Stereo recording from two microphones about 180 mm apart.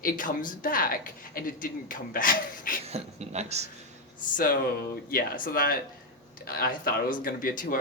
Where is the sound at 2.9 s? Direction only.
35° right (ahead or behind).